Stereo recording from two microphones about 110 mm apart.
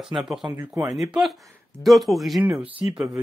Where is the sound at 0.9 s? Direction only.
Centre (ahead or behind).